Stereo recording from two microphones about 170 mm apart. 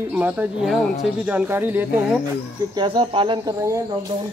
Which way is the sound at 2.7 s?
30° right (ahead or behind).